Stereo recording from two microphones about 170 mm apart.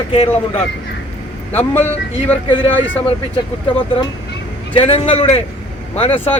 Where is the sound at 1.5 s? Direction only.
10° left (ahead or behind).